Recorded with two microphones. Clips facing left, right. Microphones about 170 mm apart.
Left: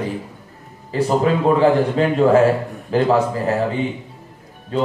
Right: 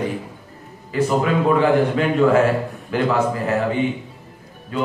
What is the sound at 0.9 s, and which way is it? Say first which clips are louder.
Speech: left 2 dB; 35° left (ahead or behind).